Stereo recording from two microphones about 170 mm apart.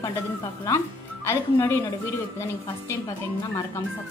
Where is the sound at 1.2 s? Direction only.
15° left (ahead or behind).